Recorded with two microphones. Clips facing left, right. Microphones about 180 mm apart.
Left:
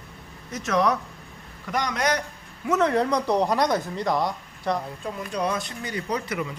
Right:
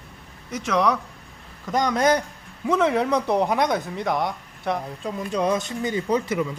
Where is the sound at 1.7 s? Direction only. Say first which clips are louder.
Right 5 dB; 30° right (ahead or behind).